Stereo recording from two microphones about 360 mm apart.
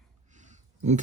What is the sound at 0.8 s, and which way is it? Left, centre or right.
Speech, centre.